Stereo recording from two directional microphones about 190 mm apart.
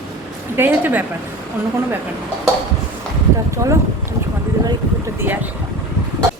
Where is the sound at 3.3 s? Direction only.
15° right (ahead or behind).